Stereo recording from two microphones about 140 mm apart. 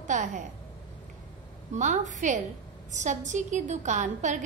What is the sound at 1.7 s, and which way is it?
A woman's voice, 60° right (ahead or behind).